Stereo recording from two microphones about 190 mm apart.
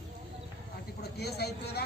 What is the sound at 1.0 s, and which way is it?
Speech, 60° left (ahead or behind).